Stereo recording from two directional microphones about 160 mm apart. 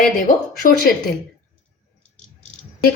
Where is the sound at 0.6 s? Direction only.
65° left (ahead or behind).